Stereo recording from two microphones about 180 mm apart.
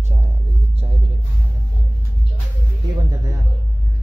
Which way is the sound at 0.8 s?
30° right (ahead or behind).